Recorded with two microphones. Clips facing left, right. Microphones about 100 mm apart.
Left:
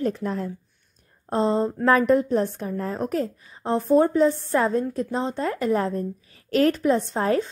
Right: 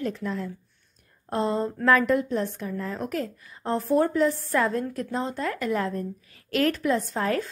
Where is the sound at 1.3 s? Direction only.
25° left (ahead or behind).